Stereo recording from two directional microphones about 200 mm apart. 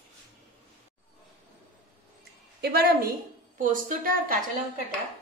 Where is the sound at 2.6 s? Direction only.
55° right (ahead or behind).